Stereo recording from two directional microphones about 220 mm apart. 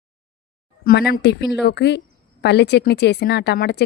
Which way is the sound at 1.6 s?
50° left (ahead or behind).